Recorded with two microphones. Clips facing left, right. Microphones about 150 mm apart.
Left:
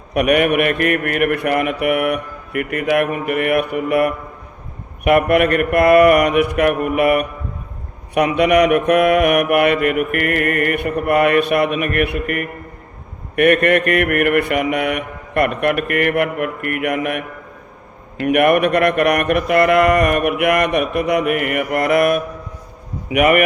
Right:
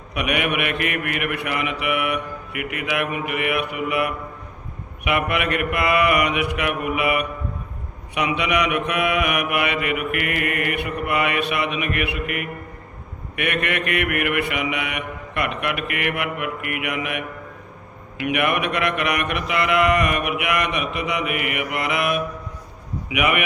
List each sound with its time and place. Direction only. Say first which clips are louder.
0.1 s mantra: left 9 dB; 45° left (ahead or behind)
8.4 s mantra: left 11 dB; 50° left (ahead or behind)